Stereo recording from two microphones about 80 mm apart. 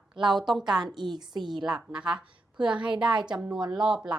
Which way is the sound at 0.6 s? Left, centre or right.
Right.